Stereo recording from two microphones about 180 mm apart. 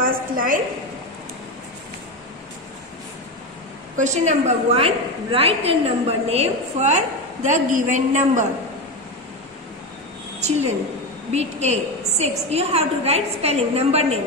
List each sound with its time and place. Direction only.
0.0 s a sound: 50° right (ahead or behind)
3.9 s a woman's voice: 40° right (ahead or behind)
11.3 s a woman's voice: 40° right (ahead or behind)